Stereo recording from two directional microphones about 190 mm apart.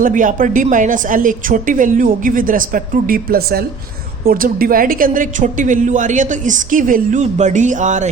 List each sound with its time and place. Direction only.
0.0 s a woman's voice: 45° right (ahead or behind)